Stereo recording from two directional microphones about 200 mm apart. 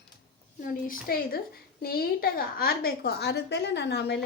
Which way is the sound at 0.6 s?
45° left (ahead or behind).